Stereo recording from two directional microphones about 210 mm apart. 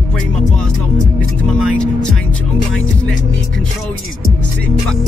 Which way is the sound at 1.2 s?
5° left (ahead or behind).